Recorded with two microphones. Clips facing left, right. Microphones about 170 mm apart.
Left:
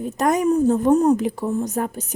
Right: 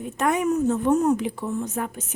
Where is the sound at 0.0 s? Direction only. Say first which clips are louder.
Left 4 dB; 40° left (ahead or behind).